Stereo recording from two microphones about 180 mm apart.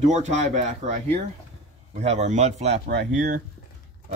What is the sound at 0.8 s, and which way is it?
Speech, 35° right (ahead or behind).